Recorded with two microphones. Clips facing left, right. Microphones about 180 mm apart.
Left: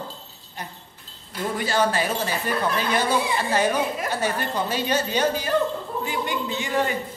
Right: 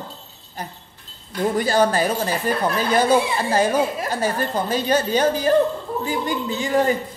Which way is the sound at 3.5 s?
35° right (ahead or behind).